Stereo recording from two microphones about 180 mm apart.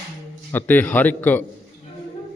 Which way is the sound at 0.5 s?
10° left (ahead or behind).